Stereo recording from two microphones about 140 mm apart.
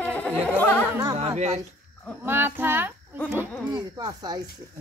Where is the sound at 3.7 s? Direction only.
30° right (ahead or behind).